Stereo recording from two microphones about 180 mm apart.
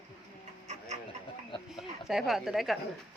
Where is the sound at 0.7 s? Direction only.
40° right (ahead or behind).